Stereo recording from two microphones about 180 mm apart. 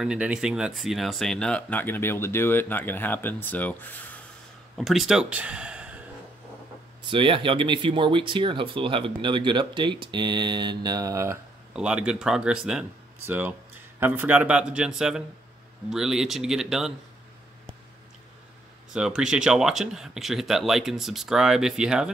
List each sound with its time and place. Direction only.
0.0 s speech: 5° right (ahead or behind)
4.7 s speech: centre (ahead or behind)
7.1 s speech: 30° right (ahead or behind)
11.7 s speech: 5° right (ahead or behind)
18.9 s speech: 5° right (ahead or behind)